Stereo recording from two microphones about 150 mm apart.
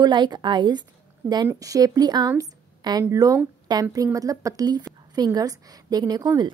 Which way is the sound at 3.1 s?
25° right (ahead or behind).